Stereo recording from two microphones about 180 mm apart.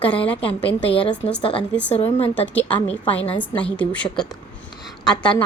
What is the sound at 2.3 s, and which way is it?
A woman's voice, 10° left (ahead or behind).